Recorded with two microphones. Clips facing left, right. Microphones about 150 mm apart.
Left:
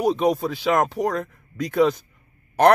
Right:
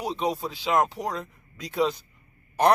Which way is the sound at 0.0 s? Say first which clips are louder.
Left 8 dB; 50° left (ahead or behind).